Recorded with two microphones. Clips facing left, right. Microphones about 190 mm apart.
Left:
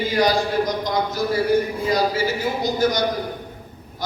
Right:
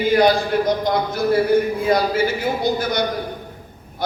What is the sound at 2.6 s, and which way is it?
Speech, 60° right (ahead or behind).